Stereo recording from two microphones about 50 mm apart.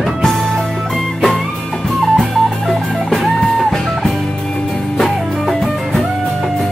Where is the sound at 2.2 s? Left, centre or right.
Centre.